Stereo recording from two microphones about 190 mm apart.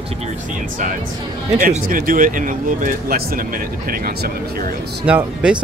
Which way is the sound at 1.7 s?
45° right (ahead or behind).